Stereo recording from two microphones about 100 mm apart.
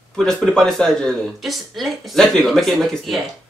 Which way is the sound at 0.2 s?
5° left (ahead or behind).